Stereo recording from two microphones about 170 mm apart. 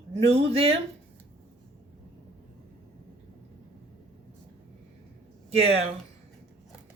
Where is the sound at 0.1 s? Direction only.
35° right (ahead or behind).